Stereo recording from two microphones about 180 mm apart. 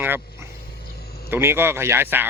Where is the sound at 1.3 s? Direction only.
15° right (ahead or behind).